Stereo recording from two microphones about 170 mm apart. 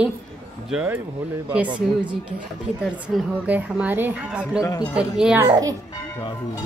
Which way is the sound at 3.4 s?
10° right (ahead or behind).